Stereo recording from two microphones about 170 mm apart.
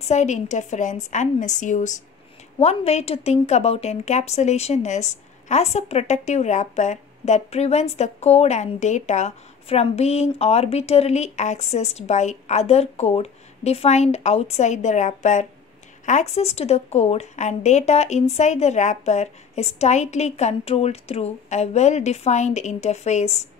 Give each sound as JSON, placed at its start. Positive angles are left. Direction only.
{"t": 0.0, "sound": "a woman's voice", "side_deg": 45}